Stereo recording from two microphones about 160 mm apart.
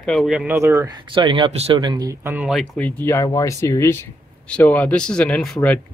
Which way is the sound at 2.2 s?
5° right (ahead or behind).